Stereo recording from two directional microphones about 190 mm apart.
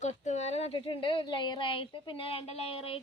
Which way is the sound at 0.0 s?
35° left (ahead or behind).